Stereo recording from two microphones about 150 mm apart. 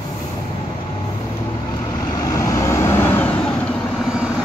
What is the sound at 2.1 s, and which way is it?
Vehicle, 25° left (ahead or behind).